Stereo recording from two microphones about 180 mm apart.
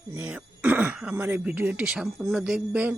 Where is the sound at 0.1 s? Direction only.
10° right (ahead or behind).